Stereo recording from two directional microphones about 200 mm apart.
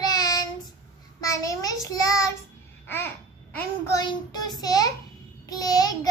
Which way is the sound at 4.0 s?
20° left (ahead or behind).